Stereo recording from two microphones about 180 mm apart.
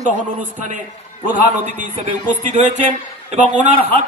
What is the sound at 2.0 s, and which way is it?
Speech, 45° right (ahead or behind).